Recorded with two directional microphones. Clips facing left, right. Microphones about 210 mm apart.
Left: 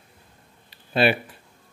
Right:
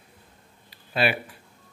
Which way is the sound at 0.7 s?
25° left (ahead or behind).